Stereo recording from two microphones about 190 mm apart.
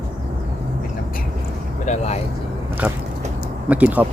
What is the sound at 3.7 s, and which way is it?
Speech, 5° right (ahead or behind).